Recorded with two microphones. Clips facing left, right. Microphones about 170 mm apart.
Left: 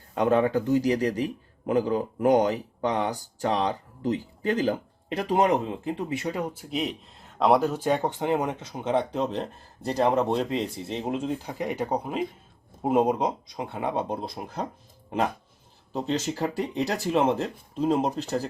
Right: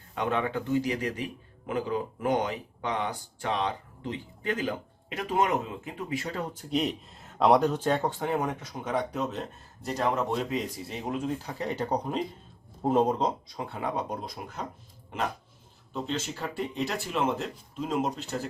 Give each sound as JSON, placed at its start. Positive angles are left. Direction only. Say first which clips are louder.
{"t": 0.1, "sound": "speech", "louder": "left 7 dB", "side_deg": 40}
{"t": 15.9, "sound": "speech", "louder": "left 5 dB", "side_deg": 40}